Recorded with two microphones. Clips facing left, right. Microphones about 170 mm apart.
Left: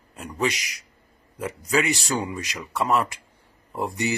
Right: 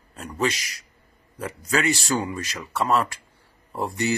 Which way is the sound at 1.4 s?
15° left (ahead or behind).